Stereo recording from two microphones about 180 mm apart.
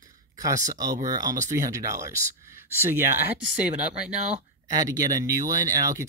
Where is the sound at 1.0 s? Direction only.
20° right (ahead or behind).